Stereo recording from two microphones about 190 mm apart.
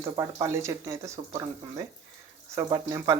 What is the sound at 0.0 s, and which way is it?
Speech, 15° right (ahead or behind).